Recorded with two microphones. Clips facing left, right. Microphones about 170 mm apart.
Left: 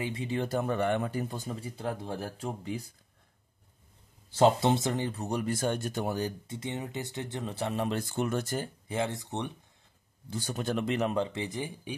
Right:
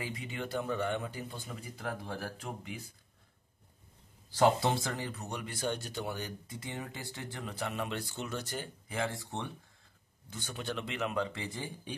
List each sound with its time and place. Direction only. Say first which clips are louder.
0.0 s speech: left 7 dB; 25° left (ahead or behind)
4.3 s speech: left 4 dB; 25° left (ahead or behind); by 6.3 s 40° left (ahead or behind)
6.4 s speech: left 5 dB; 25° left (ahead or behind)
8.0 s speech: left 8 dB; 50° left (ahead or behind)
8.8 s speech: left 4 dB; 20° left (ahead or behind)
10.3 s speech: left 7 dB; 40° left (ahead or behind)
11.3 s speech: left 5 dB; 20° left (ahead or behind)